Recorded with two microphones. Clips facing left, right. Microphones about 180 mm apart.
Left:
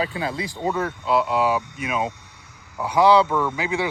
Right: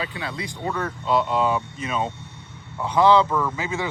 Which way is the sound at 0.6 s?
15° left (ahead or behind).